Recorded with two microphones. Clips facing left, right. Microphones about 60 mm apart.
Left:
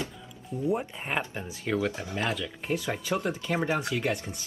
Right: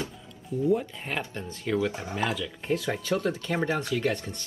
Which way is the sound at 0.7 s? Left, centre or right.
Left.